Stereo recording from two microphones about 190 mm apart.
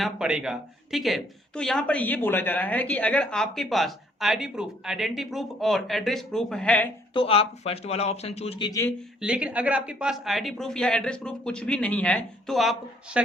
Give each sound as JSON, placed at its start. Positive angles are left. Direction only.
{"t": 0.0, "sound": "speech", "side_deg": -5}
{"t": 7.1, "sound": "a man's voice", "side_deg": 30}
{"t": 9.2, "sound": "speech", "side_deg": -5}